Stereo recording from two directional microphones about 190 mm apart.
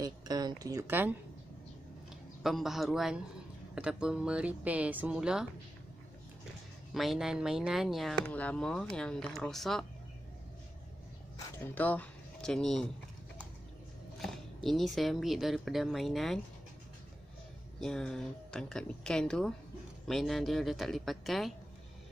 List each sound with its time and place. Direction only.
0.0 s a woman's voice: 20° right (ahead or behind)
2.4 s speech: centre (ahead or behind)
6.9 s speech: centre (ahead or behind)
11.3 s speech: 10° left (ahead or behind)
14.1 s speech: centre (ahead or behind)
17.7 s speech: 5° left (ahead or behind)